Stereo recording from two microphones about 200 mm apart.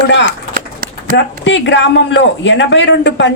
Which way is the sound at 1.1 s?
65° left (ahead or behind).